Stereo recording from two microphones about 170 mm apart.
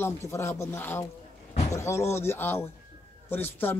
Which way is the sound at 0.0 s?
15° left (ahead or behind).